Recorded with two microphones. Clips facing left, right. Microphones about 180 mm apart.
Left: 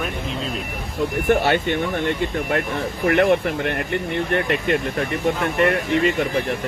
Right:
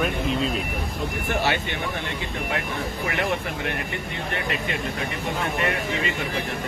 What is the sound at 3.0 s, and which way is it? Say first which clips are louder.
Speech: left 11 dB; 60° left (ahead or behind).